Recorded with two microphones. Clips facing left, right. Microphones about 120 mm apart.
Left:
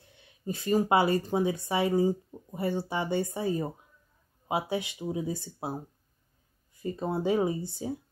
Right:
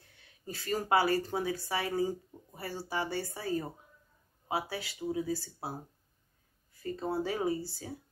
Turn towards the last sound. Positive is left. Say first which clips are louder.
# left 4 dB
turn(degrees=20)  # may be behind; listen again after turning